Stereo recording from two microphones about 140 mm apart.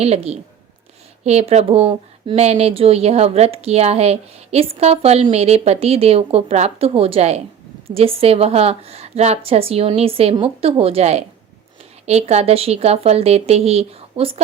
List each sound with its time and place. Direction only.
0.0 s speech: 45° right (ahead or behind)